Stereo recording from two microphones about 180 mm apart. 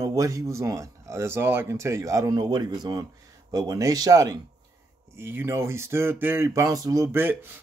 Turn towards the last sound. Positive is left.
turn(degrees=-10)  # may be behind; listen again after turning